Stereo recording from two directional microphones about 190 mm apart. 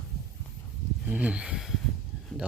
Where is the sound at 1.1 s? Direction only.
5° right (ahead or behind).